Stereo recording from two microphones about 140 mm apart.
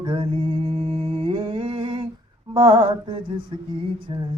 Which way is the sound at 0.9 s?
45° right (ahead or behind).